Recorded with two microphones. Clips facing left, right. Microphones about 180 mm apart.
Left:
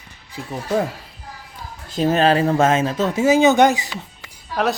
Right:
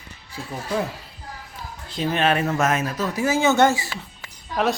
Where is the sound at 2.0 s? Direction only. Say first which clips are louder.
Left 5 dB; 40° left (ahead or behind); by 3.9 s 15° left (ahead or behind).